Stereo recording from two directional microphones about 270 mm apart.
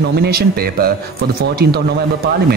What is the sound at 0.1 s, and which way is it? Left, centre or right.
Speech, right.